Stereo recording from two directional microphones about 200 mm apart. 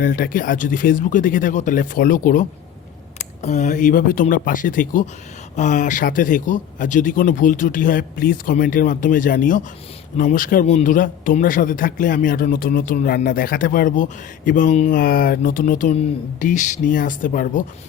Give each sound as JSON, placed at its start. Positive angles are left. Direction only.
{"t": 0.0, "sound": "speech", "side_deg": 45}